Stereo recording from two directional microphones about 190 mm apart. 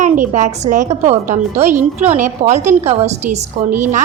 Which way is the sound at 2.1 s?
35° right (ahead or behind).